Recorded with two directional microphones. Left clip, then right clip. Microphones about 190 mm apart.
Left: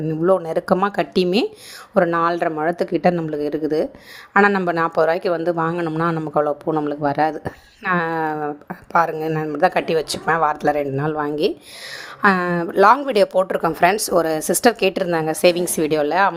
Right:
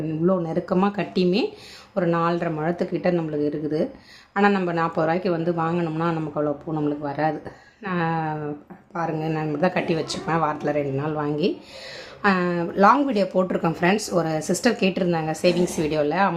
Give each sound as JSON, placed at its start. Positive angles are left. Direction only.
{"t": 0.3, "sound": "speech", "side_deg": 40}